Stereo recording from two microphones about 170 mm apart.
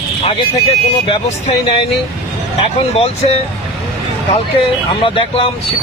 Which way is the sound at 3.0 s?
35° left (ahead or behind).